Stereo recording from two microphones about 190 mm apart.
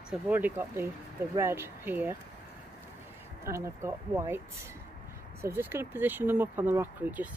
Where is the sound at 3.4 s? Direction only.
15° right (ahead or behind).